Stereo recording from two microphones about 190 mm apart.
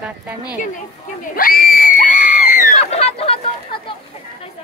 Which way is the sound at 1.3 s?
45° left (ahead or behind).